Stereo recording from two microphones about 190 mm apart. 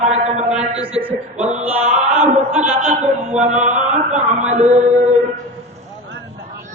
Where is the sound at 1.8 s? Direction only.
40° right (ahead or behind).